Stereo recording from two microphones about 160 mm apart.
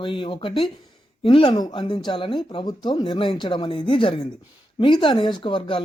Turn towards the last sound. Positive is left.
turn(degrees=35)  # may be behind; listen again after turning